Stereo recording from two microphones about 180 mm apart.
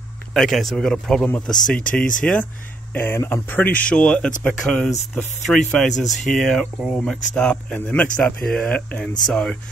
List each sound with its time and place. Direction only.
0.3 s speech: centre (ahead or behind)
1.7 s speech: 50° left (ahead or behind)
2.2 s speech: 5° left (ahead or behind)